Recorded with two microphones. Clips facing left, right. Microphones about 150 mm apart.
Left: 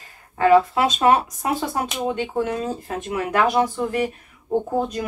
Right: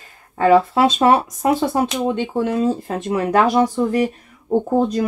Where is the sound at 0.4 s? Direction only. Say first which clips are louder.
Right 2 dB; 35° right (ahead or behind).